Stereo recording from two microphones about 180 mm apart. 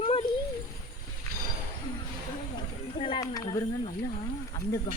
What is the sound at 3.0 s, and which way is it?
Speech, 30° left (ahead or behind).